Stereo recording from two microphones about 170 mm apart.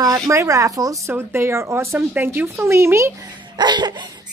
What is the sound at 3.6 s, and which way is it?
Speech, 25° right (ahead or behind).